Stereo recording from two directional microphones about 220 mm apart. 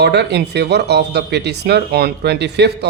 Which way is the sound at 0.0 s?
50° right (ahead or behind).